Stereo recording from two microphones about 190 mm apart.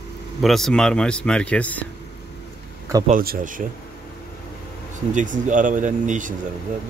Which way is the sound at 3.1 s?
45° right (ahead or behind).